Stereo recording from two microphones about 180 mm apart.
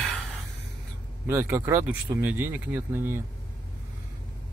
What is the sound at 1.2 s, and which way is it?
Speech, 15° right (ahead or behind).